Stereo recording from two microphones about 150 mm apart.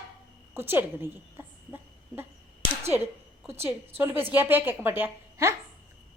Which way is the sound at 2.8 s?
15° right (ahead or behind).